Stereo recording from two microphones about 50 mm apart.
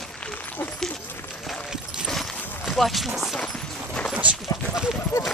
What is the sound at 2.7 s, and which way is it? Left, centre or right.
Speech, centre.